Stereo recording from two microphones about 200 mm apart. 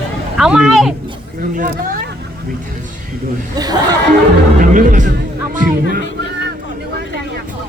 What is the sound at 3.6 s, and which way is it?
Speech, 20° right (ahead or behind).